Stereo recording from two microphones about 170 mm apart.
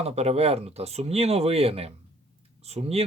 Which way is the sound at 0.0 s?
40° right (ahead or behind).